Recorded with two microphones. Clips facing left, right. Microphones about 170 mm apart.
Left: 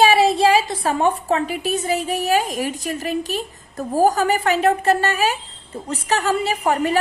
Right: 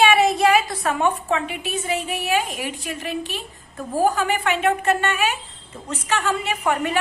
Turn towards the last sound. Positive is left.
turn(degrees=35)  # may be behind; listen again after turning